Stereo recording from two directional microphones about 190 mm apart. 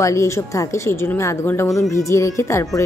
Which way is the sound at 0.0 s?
15° left (ahead or behind).